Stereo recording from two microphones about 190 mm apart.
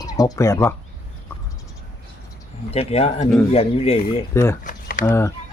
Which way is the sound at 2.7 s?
30° left (ahead or behind).